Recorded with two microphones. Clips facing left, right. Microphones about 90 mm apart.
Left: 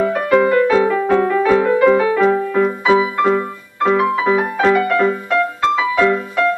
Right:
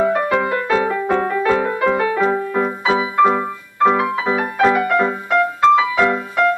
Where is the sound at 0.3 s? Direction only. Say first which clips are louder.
Left 5 dB; 5° right (ahead or behind).